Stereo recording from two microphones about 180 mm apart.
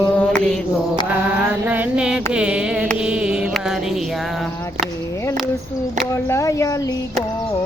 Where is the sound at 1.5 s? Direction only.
10° right (ahead or behind).